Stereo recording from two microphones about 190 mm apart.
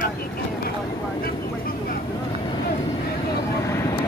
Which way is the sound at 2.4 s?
25° left (ahead or behind).